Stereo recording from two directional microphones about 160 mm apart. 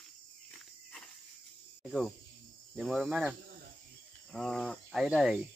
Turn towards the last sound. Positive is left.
turn(degrees=0)  # may be behind; listen again after turning